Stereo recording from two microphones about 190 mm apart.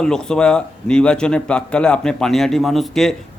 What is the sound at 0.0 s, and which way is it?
Speech, 5° left (ahead or behind).